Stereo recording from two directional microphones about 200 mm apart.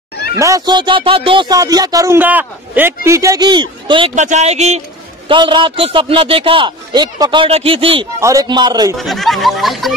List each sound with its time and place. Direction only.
0.4 s speech: 15° right (ahead or behind)
4.1 s speech: 35° right (ahead or behind)
8.2 s speech: 15° right (ahead or behind)
8.9 s speech: centre (ahead or behind)